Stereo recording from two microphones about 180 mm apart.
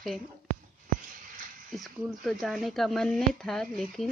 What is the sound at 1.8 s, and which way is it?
Speech, centre (ahead or behind).